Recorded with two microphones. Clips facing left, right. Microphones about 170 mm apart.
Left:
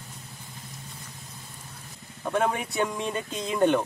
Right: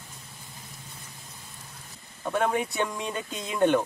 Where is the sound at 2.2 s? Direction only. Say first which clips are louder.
Even; centre (ahead or behind).